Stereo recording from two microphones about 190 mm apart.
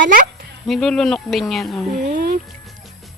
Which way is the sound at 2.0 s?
50° right (ahead or behind).